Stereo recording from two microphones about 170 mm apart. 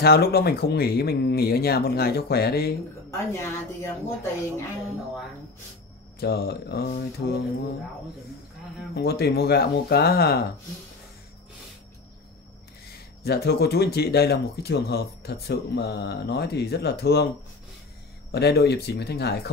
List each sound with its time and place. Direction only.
0.0 s speech: 65° left (ahead or behind)
3.1 s speech: 15° left (ahead or behind)
6.1 s speech: 65° left (ahead or behind)
8.9 s speech: 70° left (ahead or behind)
13.2 s speech: 70° left (ahead or behind)
18.3 s speech: 70° left (ahead or behind)